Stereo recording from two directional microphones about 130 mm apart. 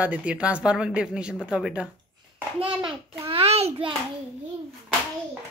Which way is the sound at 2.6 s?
45° right (ahead or behind).